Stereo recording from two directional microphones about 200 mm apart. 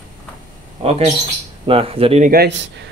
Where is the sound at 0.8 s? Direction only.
30° right (ahead or behind).